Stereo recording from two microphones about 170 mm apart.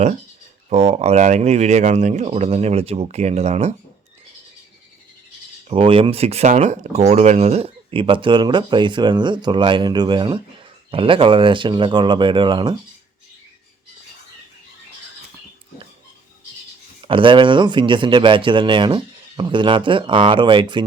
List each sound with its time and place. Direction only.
0.7 s speech: 40° right (ahead or behind)
5.6 s speech: 35° right (ahead or behind)
17.0 s speech: 30° right (ahead or behind)